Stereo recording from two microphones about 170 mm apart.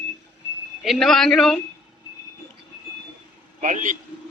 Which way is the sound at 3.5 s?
50° right (ahead or behind).